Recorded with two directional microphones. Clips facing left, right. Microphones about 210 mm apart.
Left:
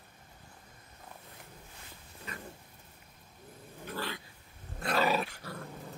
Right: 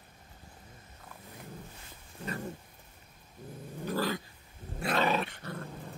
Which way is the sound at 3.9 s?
40° right (ahead or behind).